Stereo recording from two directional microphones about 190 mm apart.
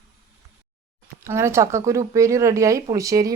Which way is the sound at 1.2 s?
15° right (ahead or behind).